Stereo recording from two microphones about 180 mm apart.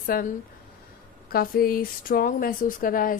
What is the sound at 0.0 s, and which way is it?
A woman's voice, 55° left (ahead or behind).